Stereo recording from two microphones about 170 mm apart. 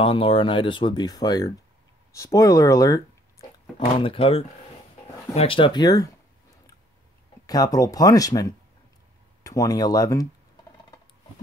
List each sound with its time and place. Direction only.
0.0 s speech: 30° left (ahead or behind)
4.0 s speech: 30° left (ahead or behind)
7.4 s speech: 20° left (ahead or behind)